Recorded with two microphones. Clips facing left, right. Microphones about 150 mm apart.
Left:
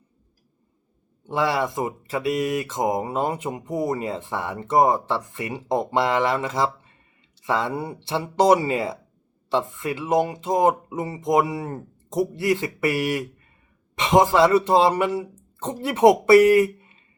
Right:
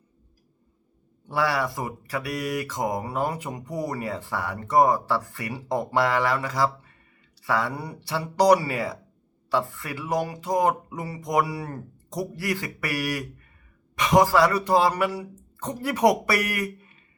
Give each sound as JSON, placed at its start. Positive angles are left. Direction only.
{"t": 1.3, "sound": "speech", "side_deg": 20}